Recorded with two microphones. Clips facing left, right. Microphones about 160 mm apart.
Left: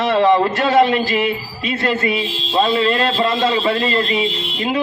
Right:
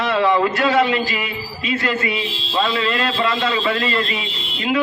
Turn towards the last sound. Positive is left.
turn(degrees=35)  # may be behind; listen again after turning